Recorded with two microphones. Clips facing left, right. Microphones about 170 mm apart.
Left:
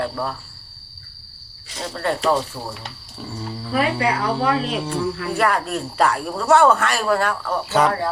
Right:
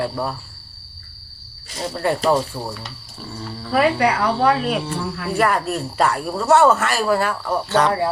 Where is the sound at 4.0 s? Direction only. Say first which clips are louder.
Right 3 dB; 65° right (ahead or behind).